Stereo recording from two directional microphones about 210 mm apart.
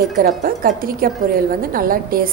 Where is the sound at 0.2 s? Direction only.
45° right (ahead or behind).